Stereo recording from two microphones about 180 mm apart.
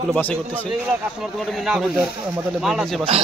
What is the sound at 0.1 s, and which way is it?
Speech, 5° left (ahead or behind).